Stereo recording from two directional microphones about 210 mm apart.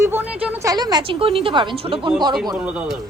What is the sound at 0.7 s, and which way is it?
Speech, 20° right (ahead or behind).